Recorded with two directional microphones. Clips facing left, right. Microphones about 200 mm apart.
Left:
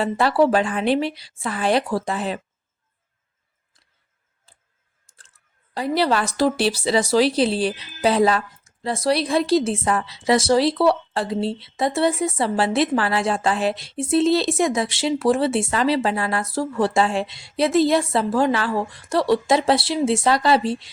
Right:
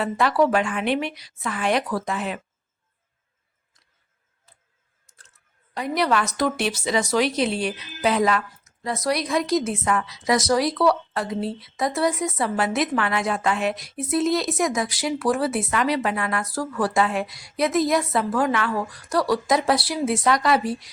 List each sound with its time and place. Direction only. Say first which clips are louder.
0.0 s a woman's voice: left 2 dB; 30° left (ahead or behind)
4.5 s tick-tock: even; 30° left (ahead or behind)
5.0 s camera: right 1 dB; 30° left (ahead or behind)
5.7 s speech: left 2 dB; 30° left (ahead or behind)